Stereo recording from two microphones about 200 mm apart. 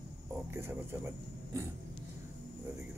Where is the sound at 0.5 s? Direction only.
10° right (ahead or behind).